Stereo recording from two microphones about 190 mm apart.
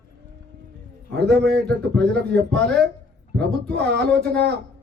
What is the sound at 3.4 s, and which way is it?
A man's voice, 60° right (ahead or behind).